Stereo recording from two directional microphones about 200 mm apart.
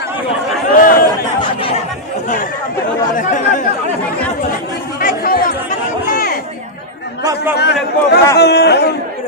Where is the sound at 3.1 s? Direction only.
40° left (ahead or behind).